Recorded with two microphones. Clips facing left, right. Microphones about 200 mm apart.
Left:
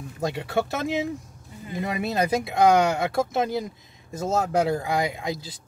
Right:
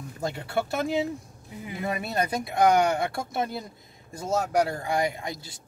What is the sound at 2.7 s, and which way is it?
Speech, 90° left.